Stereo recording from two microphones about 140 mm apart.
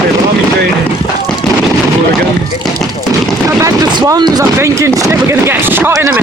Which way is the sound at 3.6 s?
25° right (ahead or behind).